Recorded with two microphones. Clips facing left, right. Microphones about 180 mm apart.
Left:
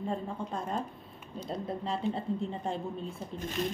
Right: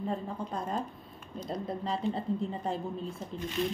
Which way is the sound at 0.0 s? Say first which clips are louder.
Even; 5° right (ahead or behind).